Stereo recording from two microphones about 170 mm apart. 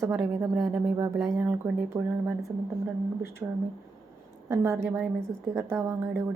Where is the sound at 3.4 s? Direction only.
15° right (ahead or behind).